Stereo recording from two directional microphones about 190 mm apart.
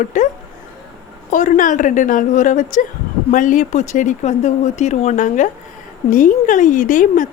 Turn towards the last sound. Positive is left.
turn(degrees=45)  # may be behind; listen again after turning